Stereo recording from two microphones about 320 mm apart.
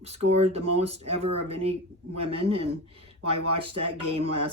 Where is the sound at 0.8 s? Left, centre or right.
Centre.